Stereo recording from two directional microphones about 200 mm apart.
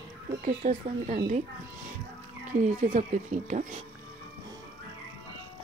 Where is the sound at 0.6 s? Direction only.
45° right (ahead or behind).